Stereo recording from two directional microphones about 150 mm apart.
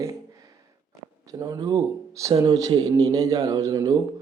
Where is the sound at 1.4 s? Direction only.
25° right (ahead or behind).